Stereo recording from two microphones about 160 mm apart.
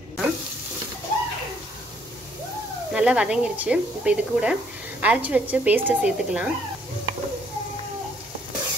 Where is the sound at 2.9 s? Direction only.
5° right (ahead or behind).